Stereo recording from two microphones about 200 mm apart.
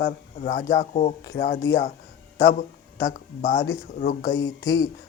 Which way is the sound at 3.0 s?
55° left (ahead or behind).